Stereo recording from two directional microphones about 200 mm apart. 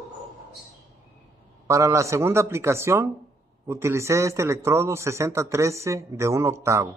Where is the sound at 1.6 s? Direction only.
15° right (ahead or behind).